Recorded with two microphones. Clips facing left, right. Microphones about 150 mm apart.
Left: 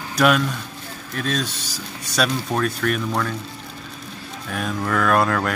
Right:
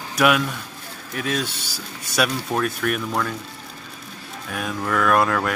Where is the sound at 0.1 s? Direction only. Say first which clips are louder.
Left 1 dB; 5° right (ahead or behind).